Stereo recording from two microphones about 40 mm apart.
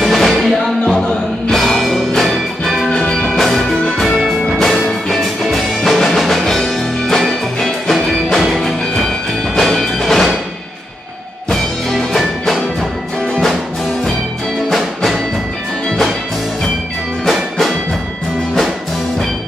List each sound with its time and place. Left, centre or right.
0.0 s music: centre
2.9 s music: centre
3.3 s music: centre
9.6 s music: centre
11.5 s music: centre
17.3 s music: centre